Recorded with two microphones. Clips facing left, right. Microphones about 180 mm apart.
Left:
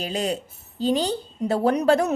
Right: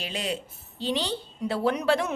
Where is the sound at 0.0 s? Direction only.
40° left (ahead or behind).